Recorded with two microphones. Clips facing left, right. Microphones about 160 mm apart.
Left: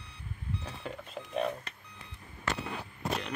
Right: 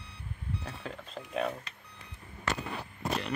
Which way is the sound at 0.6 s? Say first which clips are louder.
Even; centre (ahead or behind).